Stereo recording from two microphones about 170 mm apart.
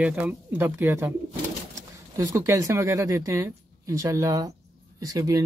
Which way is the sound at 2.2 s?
15° right (ahead or behind).